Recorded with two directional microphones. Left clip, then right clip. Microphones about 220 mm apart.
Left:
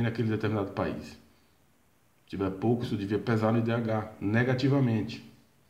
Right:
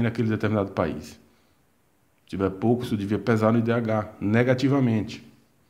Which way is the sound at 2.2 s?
40° right (ahead or behind).